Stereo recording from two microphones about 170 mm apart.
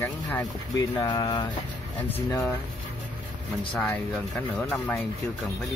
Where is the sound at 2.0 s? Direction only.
10° left (ahead or behind).